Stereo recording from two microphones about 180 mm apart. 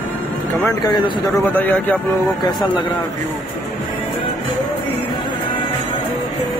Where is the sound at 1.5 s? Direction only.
10° left (ahead or behind).